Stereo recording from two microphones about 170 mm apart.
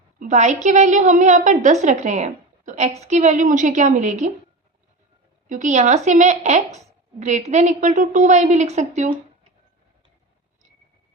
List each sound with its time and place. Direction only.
0.2 s a woman's voice: 45° right (ahead or behind)
5.5 s a woman's voice: 45° right (ahead or behind)